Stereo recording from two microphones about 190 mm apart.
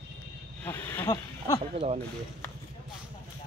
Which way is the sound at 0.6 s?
10° left (ahead or behind).